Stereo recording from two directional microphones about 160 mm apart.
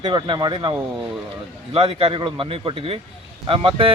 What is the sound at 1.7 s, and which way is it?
Speech, 30° right (ahead or behind).